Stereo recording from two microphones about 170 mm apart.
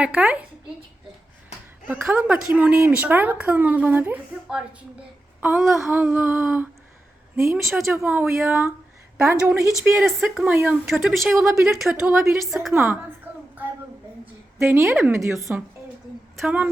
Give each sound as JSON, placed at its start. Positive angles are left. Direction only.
{"t": 0.0, "sound": "speech", "side_deg": -5}
{"t": 1.9, "sound": "speech", "side_deg": -10}
{"t": 10.1, "sound": "speech", "side_deg": 0}
{"t": 11.0, "sound": "a woman's voice", "side_deg": 0}
{"t": 12.7, "sound": "speech", "side_deg": -10}
{"t": 14.6, "sound": "speech", "side_deg": -15}